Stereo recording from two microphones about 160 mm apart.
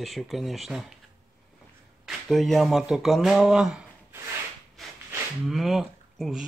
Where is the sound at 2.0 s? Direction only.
Centre (ahead or behind).